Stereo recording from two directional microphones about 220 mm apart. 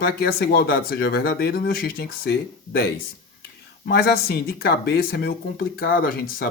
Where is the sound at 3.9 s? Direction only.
45° left (ahead or behind).